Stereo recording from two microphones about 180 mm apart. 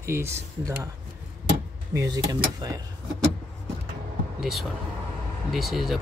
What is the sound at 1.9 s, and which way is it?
Speech, 20° right (ahead or behind).